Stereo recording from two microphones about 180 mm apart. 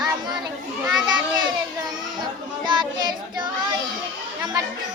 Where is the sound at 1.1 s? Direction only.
25° right (ahead or behind).